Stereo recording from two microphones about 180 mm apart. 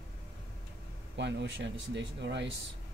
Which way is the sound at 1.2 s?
75° right (ahead or behind).